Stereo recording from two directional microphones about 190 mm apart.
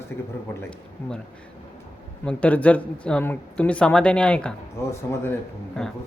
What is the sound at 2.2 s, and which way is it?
Speech, 5° left (ahead or behind).